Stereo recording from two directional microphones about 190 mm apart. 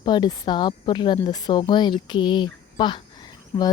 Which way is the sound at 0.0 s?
25° left (ahead or behind).